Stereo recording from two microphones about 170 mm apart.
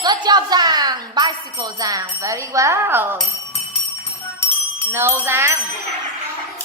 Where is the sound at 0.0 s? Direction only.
25° right (ahead or behind).